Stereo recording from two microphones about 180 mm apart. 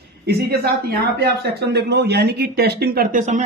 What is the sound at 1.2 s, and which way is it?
Speech, 65° right (ahead or behind).